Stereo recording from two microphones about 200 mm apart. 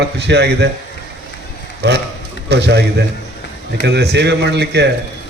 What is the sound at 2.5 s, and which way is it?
Speech, 55° right (ahead or behind).